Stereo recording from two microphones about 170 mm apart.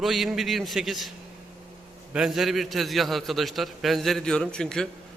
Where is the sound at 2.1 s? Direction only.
5° right (ahead or behind).